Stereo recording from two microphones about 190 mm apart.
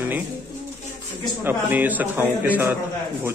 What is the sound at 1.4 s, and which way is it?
A man's voice, 10° right (ahead or behind).